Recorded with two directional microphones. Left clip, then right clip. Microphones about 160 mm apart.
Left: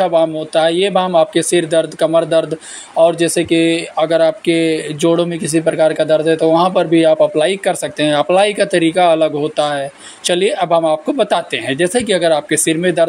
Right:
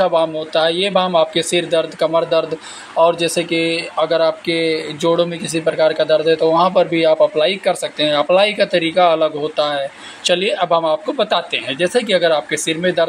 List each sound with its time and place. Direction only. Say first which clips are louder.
0.0 s speech: left 2 dB; 45° left (ahead or behind)